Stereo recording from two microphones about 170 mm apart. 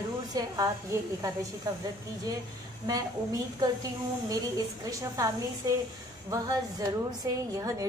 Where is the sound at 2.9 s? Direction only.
20° right (ahead or behind).